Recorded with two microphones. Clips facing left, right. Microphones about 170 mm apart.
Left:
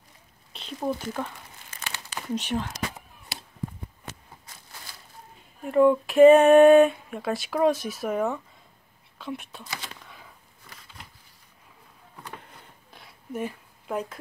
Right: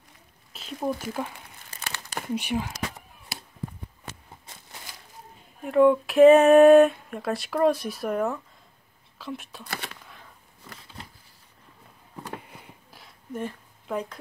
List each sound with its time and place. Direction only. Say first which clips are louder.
0.5 s a sound: even; 5° right (ahead or behind)
1.7 s crumpling: right 1 dB; 40° right (ahead or behind)
2.3 s speech: even; 10° right (ahead or behind)
5.6 s speech: right 1 dB; centre (ahead or behind)
12.4 s a sound: right 3 dB; 5° right (ahead or behind)
13.3 s speech: left 1 dB; 5° left (ahead or behind)